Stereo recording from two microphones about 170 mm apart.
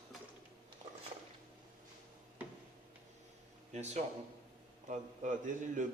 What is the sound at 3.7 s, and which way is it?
A man's voice, 40° right (ahead or behind).